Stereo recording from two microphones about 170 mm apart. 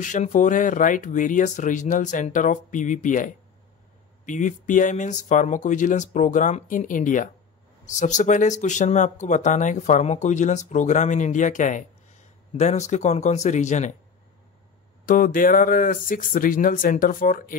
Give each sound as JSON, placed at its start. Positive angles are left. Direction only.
{"t": 0.0, "sound": "speech", "side_deg": 50}
{"t": 4.3, "sound": "speech", "side_deg": 50}
{"t": 15.0, "sound": "speech", "side_deg": 55}